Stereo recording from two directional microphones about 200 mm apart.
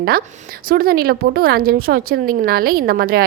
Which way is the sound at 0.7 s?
45° right (ahead or behind).